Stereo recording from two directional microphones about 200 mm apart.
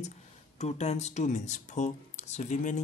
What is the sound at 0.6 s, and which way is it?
Speech, 35° left (ahead or behind).